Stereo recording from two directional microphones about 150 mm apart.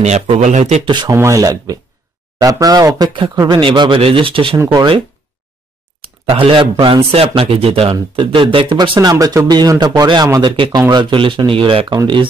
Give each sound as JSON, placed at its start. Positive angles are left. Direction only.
{"t": 0.0, "sound": "speech", "side_deg": -50}
{"t": 0.8, "sound": "speech", "side_deg": -30}
{"t": 6.0, "sound": "speech", "side_deg": -40}